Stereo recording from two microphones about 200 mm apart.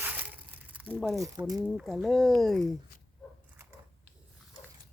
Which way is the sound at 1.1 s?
15° right (ahead or behind).